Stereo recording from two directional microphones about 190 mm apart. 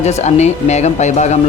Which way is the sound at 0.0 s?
35° left (ahead or behind).